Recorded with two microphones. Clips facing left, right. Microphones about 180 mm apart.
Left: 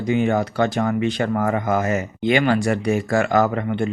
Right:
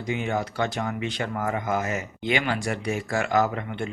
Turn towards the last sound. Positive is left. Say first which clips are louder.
# left 5 dB
turn(degrees=50)  # may be behind; listen again after turning